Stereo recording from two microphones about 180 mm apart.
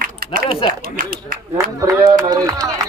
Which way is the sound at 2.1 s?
20° right (ahead or behind).